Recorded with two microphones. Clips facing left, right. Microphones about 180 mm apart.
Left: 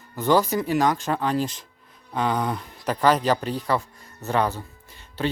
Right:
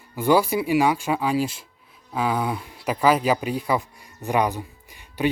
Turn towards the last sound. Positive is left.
turn(degrees=-15)  # may be behind; listen again after turning